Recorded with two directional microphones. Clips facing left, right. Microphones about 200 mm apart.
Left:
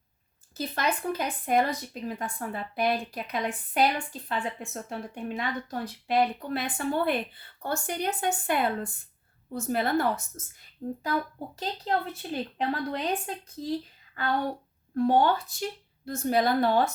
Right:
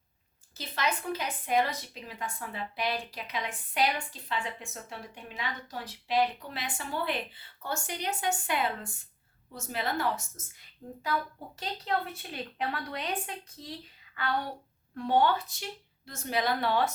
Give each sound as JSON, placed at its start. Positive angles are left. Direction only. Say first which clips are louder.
{"t": 0.5, "sound": "a woman's voice", "louder": "left 4 dB", "side_deg": 50}